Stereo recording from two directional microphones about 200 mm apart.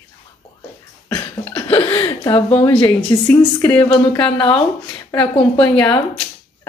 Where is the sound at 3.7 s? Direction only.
25° left (ahead or behind).